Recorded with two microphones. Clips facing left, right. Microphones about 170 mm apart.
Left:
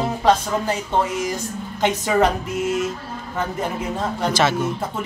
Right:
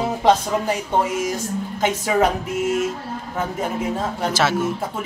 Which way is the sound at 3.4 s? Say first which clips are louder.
Right 1 dB; 5° right (ahead or behind).